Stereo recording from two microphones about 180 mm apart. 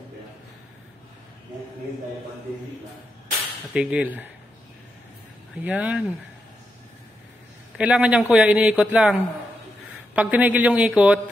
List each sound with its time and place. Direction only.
3.7 s speech: 5° right (ahead or behind)
5.6 s speech: 10° right (ahead or behind)
7.7 s speech: 5° right (ahead or behind)